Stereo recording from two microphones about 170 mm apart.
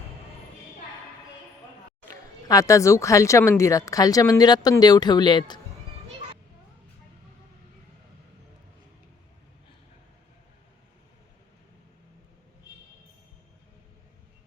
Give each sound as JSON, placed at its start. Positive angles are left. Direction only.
{"t": 2.0, "sound": "speech", "side_deg": 20}